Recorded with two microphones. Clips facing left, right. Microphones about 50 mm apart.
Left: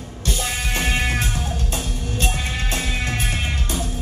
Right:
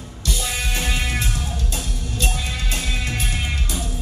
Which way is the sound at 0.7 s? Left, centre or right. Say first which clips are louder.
Left 5 dB; left.